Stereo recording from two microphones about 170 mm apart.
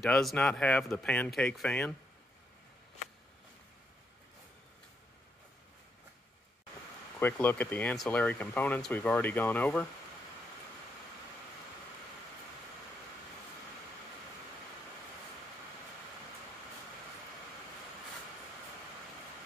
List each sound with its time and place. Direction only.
0.0 s speech: centre (ahead or behind)
7.2 s speech: 10° left (ahead or behind)